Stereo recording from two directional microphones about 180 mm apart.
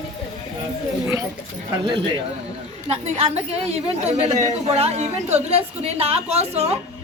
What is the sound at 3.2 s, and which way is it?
A woman's voice, 35° right (ahead or behind).